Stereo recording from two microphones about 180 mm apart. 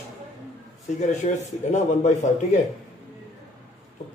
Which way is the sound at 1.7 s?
40° left (ahead or behind).